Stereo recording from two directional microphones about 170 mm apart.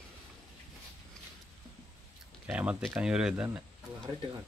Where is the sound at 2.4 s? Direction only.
10° right (ahead or behind).